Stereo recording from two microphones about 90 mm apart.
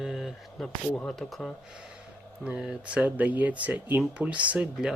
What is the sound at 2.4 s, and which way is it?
Speech, 5° right (ahead or behind).